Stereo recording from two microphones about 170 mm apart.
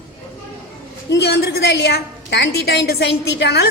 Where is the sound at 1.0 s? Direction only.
80° left.